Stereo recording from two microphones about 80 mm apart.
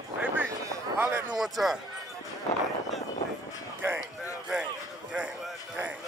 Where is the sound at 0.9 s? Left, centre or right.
Right.